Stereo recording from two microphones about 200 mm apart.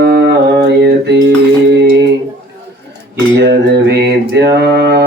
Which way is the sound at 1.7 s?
60° right (ahead or behind).